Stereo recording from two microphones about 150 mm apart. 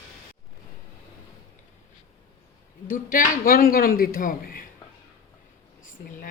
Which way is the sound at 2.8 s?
65° left (ahead or behind).